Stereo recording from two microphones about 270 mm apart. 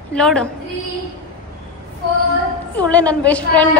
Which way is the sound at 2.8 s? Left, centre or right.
Centre.